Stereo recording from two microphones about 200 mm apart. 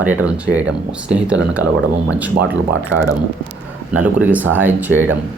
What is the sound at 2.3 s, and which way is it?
Speech, 70° right (ahead or behind).